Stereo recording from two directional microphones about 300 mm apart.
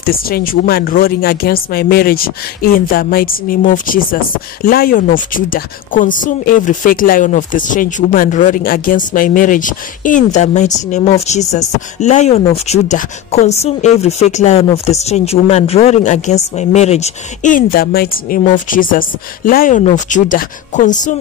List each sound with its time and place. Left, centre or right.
0.0 s speech: left